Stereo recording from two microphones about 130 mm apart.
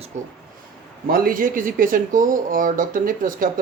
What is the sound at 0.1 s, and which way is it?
Speech, 65° right (ahead or behind).